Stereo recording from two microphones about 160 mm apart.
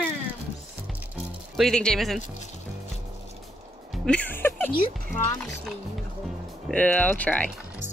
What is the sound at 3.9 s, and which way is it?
Music, 5° left (ahead or behind).